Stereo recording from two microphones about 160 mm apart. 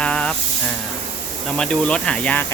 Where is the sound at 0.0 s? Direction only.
5° left (ahead or behind).